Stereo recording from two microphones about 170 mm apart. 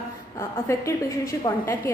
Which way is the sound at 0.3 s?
15° left (ahead or behind).